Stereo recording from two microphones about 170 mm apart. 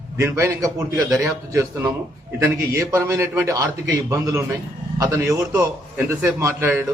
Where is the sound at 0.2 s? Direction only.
15° right (ahead or behind).